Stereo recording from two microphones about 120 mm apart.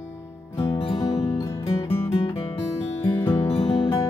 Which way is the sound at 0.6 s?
45° left (ahead or behind).